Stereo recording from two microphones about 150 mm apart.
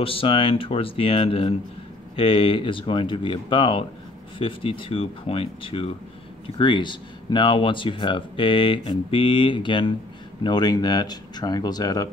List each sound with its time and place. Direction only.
0.0 s speech: 35° left (ahead or behind)